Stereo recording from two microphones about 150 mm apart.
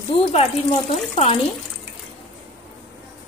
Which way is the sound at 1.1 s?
40° left (ahead or behind).